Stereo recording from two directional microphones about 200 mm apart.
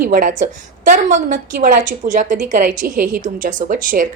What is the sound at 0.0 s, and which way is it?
A woman's voice, 45° right (ahead or behind).